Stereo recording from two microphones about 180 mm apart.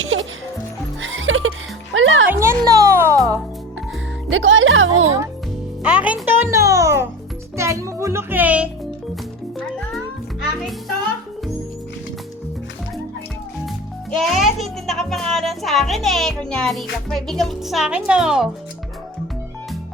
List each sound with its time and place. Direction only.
0.0 s music: 90° right
2.4 s music: 15° right (ahead or behind)
4.3 s music: 90° right
5.8 s music: 5° right (ahead or behind)
13.7 s music: centre (ahead or behind)